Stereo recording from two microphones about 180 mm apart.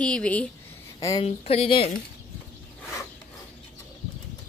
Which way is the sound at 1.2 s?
35° left (ahead or behind).